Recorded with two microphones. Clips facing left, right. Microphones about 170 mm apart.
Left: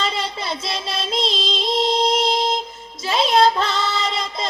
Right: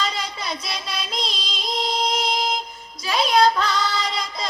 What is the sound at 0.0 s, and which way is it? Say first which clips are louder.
Music: left 3 dB; 25° left (ahead or behind).